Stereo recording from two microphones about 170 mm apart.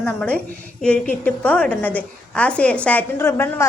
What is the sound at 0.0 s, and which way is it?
A woman's voice, 10° left (ahead or behind).